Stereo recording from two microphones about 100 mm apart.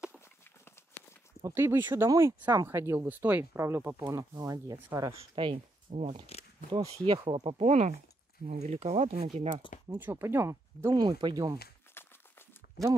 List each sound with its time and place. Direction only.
1.4 s speech: 25° right (ahead or behind)
4.1 s speech: 35° right (ahead or behind)
5.2 s speech: 70° right (ahead or behind)
7.4 s speech: 90° right
9.9 s speech: 20° right (ahead or behind)
11.0 s speech: 50° right (ahead or behind)
11.9 s a sound: 25° left (ahead or behind)